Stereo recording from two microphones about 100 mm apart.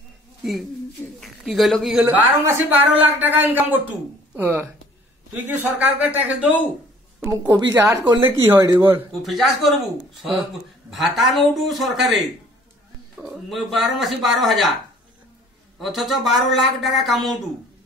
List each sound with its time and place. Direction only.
0.4 s speech: centre (ahead or behind)
2.0 s speech: 20° right (ahead or behind)
7.2 s speech: 30° right (ahead or behind)
9.2 s speech: centre (ahead or behind)
15.8 s speech: centre (ahead or behind)